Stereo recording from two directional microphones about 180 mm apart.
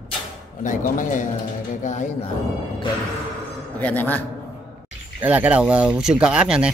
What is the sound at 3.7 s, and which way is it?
Speech, 10° left (ahead or behind).